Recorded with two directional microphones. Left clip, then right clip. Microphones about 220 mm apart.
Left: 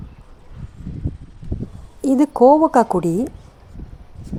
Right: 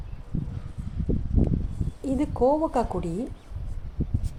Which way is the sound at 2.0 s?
40° left (ahead or behind).